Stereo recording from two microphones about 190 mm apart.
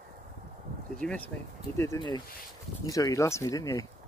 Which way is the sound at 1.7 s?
15° left (ahead or behind).